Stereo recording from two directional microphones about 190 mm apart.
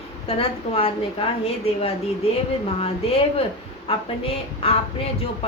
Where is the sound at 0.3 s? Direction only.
30° left (ahead or behind).